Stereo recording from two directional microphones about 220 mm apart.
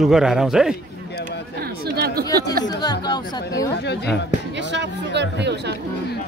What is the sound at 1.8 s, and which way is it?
Speech, 45° right (ahead or behind).